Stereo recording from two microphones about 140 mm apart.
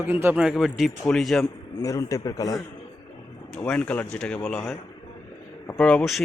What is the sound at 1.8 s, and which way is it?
Speech, 20° left (ahead or behind).